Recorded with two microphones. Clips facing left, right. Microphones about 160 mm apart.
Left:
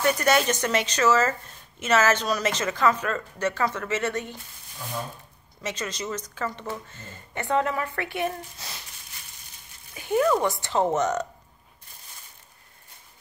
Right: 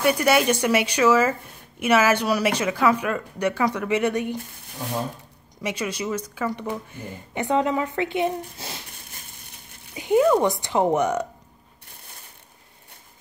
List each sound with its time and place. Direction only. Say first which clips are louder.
0.0 s speech: right 3 dB; 10° right (ahead or behind)
5.6 s speech: right 4 dB; 10° right (ahead or behind)
9.9 s speech: right 4 dB; 15° right (ahead or behind)